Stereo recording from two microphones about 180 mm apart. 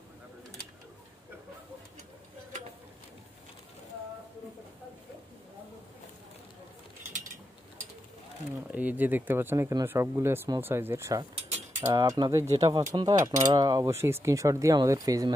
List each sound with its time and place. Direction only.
8.7 s speech: 10° right (ahead or behind)